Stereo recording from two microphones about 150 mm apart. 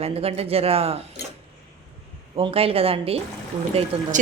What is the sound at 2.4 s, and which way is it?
Speech, 40° right (ahead or behind).